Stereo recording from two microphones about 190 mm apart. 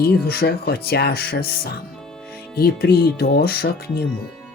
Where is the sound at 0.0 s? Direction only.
55° left (ahead or behind).